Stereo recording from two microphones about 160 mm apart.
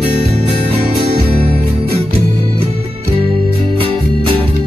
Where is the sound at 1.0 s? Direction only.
40° right (ahead or behind).